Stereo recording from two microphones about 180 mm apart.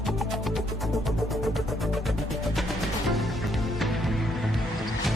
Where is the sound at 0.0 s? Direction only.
Centre (ahead or behind).